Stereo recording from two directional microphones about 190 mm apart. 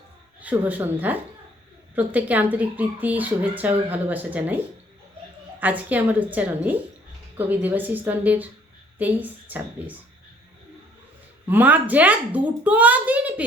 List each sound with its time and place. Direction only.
0.4 s speech: 10° right (ahead or behind)
11.4 s speech: 10° right (ahead or behind)